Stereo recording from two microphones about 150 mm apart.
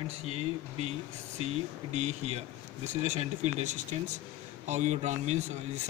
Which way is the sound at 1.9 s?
50° right (ahead or behind).